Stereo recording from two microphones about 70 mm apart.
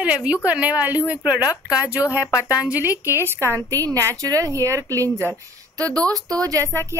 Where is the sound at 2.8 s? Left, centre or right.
Right.